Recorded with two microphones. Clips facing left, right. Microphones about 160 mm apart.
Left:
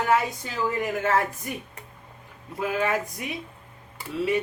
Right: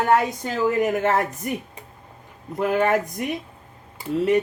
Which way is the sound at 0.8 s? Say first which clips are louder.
Right 6 dB; 65° right (ahead or behind).